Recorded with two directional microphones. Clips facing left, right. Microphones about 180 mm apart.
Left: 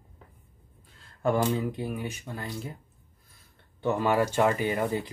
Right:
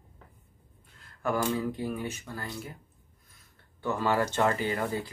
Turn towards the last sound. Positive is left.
turn(degrees=20)  # may be behind; listen again after turning